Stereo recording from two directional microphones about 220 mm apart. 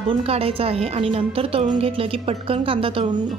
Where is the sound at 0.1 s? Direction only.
25° right (ahead or behind).